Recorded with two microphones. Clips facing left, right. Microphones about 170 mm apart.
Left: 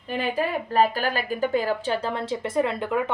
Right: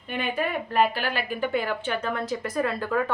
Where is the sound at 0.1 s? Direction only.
35° left (ahead or behind).